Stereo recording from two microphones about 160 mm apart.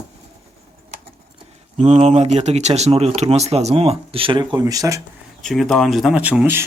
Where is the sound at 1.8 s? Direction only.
45° right (ahead or behind); by 5.0 s 20° right (ahead or behind).